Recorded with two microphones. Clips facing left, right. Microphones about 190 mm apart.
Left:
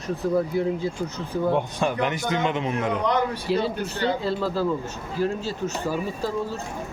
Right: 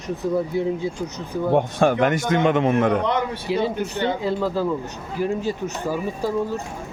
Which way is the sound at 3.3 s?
15° right (ahead or behind).